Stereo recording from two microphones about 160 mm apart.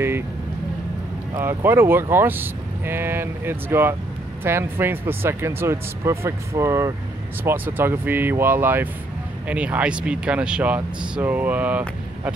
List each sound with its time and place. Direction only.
1.4 s speech: 15° right (ahead or behind)